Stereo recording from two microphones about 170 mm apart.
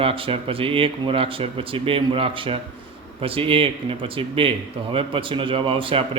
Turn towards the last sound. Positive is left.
turn(degrees=-30)  # may be behind; listen again after turning